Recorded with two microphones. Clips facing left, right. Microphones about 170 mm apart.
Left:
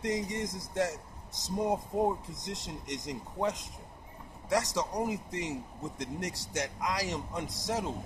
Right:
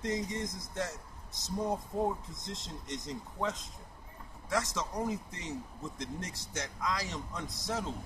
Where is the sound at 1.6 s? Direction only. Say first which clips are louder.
Left 3 dB; 20° left (ahead or behind).